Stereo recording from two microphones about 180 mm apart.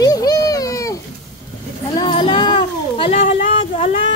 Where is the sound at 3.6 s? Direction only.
40° left (ahead or behind).